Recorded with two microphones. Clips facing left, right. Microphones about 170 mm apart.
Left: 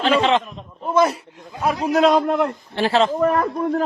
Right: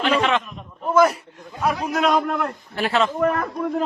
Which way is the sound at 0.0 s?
30° left (ahead or behind).